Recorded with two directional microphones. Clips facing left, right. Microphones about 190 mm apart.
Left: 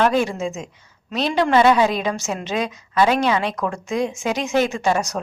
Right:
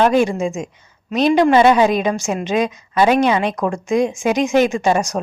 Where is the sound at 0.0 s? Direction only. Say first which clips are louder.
Right 4 dB; 15° right (ahead or behind).